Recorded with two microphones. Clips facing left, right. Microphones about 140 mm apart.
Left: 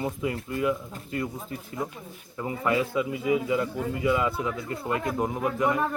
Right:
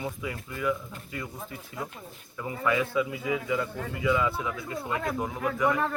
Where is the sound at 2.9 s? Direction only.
10° left (ahead or behind).